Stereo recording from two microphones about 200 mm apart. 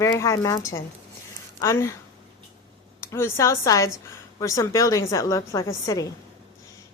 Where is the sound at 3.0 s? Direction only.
15° left (ahead or behind).